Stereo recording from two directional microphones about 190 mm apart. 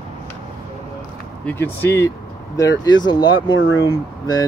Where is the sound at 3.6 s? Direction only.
90° left.